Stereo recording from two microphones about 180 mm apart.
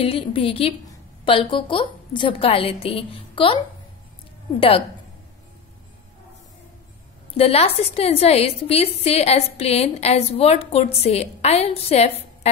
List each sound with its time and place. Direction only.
0.0 s a woman's voice: 30° left (ahead or behind)
4.6 s a woman's voice: 30° left (ahead or behind)
7.3 s a woman's voice: 35° left (ahead or behind)